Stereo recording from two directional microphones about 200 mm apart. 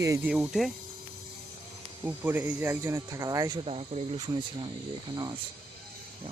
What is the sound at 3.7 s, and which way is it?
Speech, 30° right (ahead or behind).